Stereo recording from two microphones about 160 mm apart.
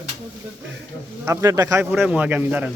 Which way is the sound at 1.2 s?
20° right (ahead or behind).